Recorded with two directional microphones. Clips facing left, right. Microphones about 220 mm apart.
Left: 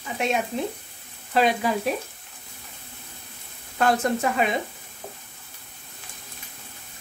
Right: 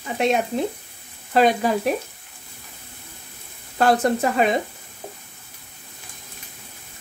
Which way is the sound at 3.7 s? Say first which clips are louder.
Right 4 dB; 35° right (ahead or behind).